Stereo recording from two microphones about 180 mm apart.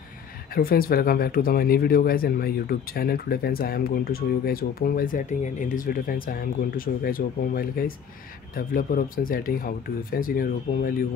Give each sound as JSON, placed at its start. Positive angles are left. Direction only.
{"t": 0.6, "sound": "speech", "side_deg": 55}